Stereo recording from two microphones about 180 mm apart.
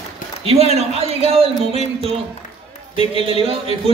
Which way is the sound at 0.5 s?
35° right (ahead or behind).